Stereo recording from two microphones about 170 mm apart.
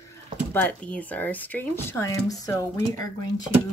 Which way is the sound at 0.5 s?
10° left (ahead or behind).